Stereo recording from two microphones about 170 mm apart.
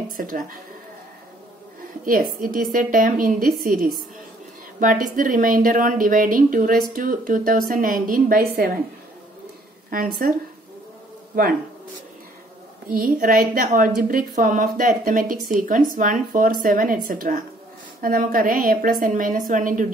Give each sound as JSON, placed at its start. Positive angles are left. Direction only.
{"t": 0.2, "sound": "a woman's voice", "side_deg": -55}
{"t": 2.0, "sound": "a woman's voice", "side_deg": -55}
{"t": 9.8, "sound": "a woman's voice", "side_deg": -55}
{"t": 12.9, "sound": "a woman's voice", "side_deg": -55}